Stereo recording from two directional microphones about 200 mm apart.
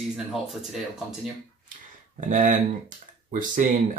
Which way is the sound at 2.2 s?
40° right (ahead or behind).